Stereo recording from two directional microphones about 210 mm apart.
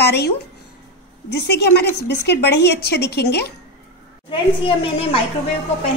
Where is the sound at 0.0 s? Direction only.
50° left (ahead or behind).